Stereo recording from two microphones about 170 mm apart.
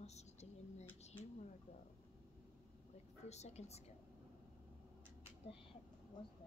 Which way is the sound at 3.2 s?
40° left (ahead or behind).